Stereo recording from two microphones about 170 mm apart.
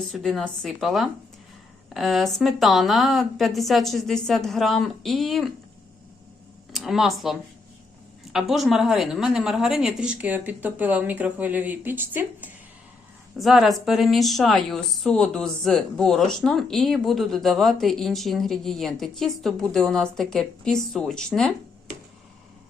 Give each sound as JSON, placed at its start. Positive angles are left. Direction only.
{"t": 0.1, "sound": "a woman's voice", "side_deg": 5}
{"t": 6.7, "sound": "speech", "side_deg": 0}
{"t": 13.4, "sound": "a woman's voice", "side_deg": 0}